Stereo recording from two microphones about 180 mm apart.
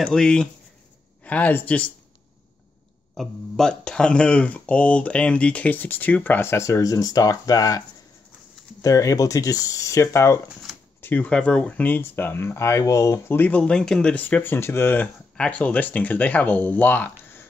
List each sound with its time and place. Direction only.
0.0 s speech: 5° left (ahead or behind)
3.2 s speech: centre (ahead or behind); by 7.8 s 20° left (ahead or behind)
8.8 s speech: 20° left (ahead or behind)